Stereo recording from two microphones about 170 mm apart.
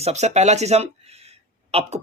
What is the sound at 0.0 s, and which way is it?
Speech, 40° right (ahead or behind).